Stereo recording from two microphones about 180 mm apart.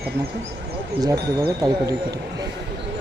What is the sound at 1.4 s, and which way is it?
Speech, 20° right (ahead or behind).